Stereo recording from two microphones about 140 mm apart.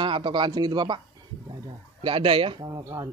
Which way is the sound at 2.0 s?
40° right (ahead or behind).